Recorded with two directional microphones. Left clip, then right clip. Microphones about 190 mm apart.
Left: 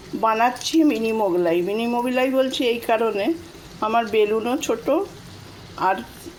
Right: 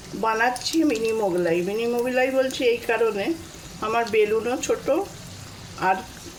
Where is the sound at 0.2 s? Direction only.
30° left (ahead or behind).